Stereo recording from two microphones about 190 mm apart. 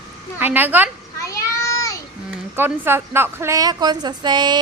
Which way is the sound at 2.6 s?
10° right (ahead or behind).